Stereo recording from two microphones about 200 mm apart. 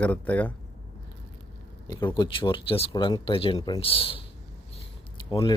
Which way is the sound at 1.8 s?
25° left (ahead or behind).